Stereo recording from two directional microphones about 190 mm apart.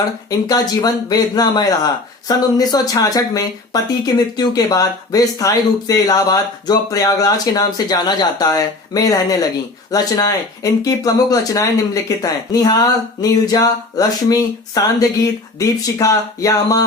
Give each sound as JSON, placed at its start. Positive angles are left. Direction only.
{"t": 0.3, "sound": "speech", "side_deg": 20}